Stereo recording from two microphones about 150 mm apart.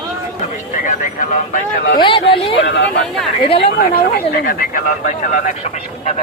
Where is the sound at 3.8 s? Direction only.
80° left.